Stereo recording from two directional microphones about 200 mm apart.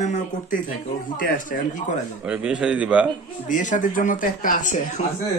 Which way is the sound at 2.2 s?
5° right (ahead or behind).